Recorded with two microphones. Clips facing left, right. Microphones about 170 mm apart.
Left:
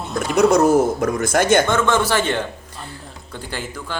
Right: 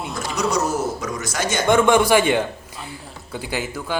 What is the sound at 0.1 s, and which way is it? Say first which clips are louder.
Speech: left 9 dB; 55° left (ahead or behind).